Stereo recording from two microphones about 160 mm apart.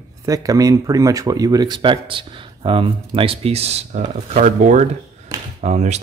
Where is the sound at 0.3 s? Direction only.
20° right (ahead or behind).